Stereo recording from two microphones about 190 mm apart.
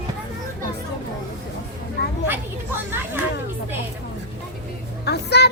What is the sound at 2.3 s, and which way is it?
Speech, 10° right (ahead or behind).